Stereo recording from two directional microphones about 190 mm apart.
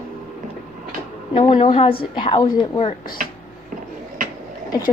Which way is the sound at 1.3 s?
30° left (ahead or behind).